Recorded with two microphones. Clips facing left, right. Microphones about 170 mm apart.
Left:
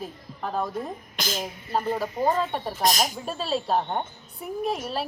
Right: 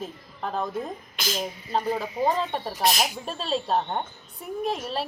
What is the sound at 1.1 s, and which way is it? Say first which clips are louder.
Speech: even; 45° left (ahead or behind).